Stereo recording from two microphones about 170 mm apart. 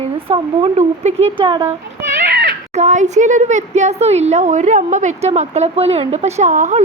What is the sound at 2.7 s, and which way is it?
Speech, 45° right (ahead or behind).